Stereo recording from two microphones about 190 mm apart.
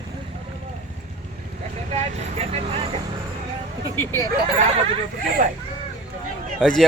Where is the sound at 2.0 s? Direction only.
35° right (ahead or behind).